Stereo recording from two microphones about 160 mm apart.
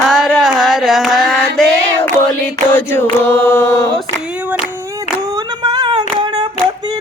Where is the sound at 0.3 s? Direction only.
Centre (ahead or behind).